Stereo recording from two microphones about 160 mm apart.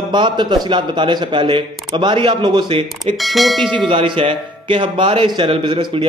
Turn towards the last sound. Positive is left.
turn(degrees=-30)  # may be behind; listen again after turning